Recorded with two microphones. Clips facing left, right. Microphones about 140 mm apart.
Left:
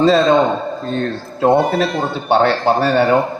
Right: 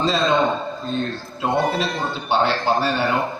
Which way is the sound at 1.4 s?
55° left (ahead or behind).